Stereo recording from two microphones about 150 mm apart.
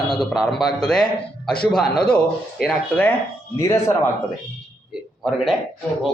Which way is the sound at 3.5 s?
20° left (ahead or behind).